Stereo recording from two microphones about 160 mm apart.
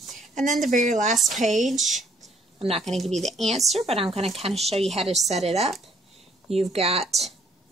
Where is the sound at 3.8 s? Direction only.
40° right (ahead or behind).